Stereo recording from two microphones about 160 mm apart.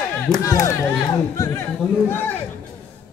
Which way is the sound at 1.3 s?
20° left (ahead or behind).